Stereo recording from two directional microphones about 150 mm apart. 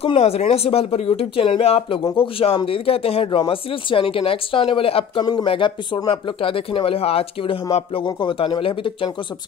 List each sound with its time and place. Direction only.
0.0 s speech: 40° left (ahead or behind)